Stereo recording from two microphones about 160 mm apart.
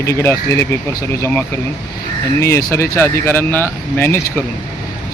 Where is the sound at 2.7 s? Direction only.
15° left (ahead or behind).